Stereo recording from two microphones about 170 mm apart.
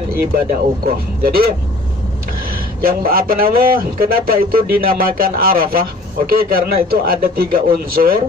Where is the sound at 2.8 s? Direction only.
60° right (ahead or behind).